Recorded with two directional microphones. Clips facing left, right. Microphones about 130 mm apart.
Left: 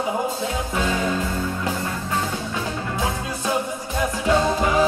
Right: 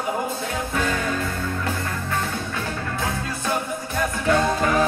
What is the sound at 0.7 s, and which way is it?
Music, 15° left (ahead or behind).